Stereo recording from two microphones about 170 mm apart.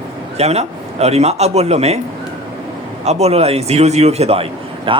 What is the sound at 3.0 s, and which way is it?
A man's voice, 40° right (ahead or behind).